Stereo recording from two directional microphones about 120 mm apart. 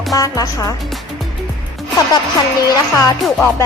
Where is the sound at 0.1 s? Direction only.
30° left (ahead or behind).